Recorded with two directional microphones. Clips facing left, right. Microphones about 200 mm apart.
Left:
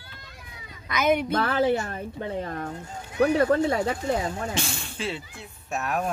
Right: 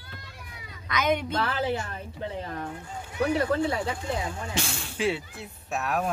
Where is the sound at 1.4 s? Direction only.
45° left (ahead or behind).